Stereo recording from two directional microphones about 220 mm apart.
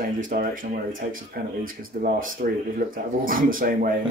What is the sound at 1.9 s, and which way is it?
Speech, 40° right (ahead or behind).